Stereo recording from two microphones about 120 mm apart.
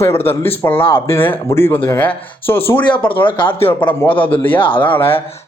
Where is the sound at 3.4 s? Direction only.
45° left (ahead or behind).